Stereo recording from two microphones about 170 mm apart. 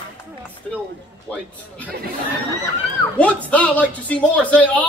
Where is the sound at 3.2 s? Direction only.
10° left (ahead or behind).